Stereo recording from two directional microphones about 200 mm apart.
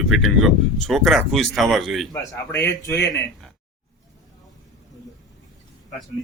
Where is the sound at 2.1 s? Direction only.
15° left (ahead or behind).